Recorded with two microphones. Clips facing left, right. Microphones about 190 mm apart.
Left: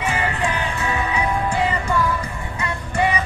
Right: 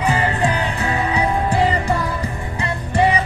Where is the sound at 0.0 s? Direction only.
35° right (ahead or behind).